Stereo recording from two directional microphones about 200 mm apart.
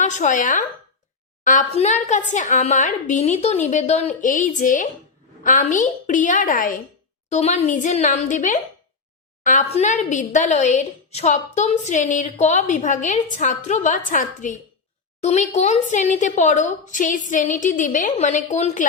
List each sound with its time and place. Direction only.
0.0 s a woman's voice: 35° left (ahead or behind)